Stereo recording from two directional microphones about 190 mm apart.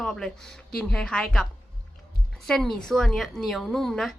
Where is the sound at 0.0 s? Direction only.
Centre (ahead or behind).